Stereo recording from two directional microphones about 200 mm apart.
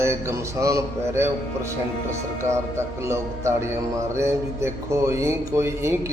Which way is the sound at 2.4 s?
15° right (ahead or behind).